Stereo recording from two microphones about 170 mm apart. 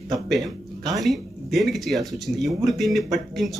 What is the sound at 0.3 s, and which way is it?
Speech, centre (ahead or behind).